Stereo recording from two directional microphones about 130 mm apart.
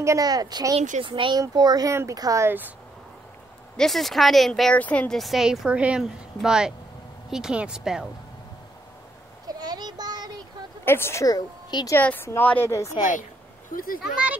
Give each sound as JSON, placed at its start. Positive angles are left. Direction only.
{"t": 0.0, "sound": "a child's voice", "side_deg": -25}
{"t": 3.7, "sound": "speech", "side_deg": 0}
{"t": 9.5, "sound": "child singing", "side_deg": -30}
{"t": 10.9, "sound": "a woman's voice", "side_deg": 20}
{"t": 12.0, "sound": "a woman's voice", "side_deg": 15}
{"t": 14.0, "sound": "speech", "side_deg": -10}